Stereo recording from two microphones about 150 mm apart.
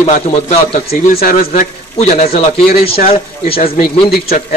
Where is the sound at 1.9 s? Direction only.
45° left (ahead or behind).